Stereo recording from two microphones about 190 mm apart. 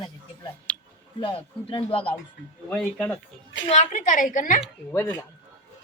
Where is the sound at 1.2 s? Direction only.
25° left (ahead or behind).